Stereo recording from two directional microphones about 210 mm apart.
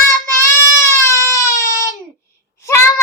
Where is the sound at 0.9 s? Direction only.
15° left (ahead or behind).